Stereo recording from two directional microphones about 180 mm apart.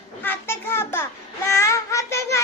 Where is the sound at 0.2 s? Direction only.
10° left (ahead or behind).